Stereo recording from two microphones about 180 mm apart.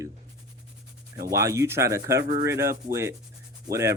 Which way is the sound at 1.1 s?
20° right (ahead or behind).